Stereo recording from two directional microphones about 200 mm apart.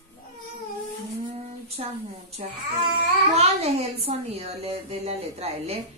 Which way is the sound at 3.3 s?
30° right (ahead or behind).